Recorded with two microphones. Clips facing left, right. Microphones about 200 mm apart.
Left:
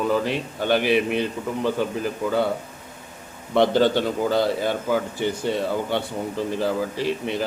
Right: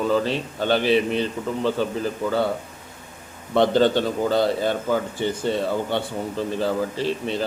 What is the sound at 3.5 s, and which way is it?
Speech, 15° left (ahead or behind).